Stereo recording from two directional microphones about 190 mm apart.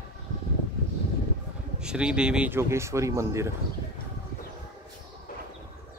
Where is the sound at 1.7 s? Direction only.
5° right (ahead or behind).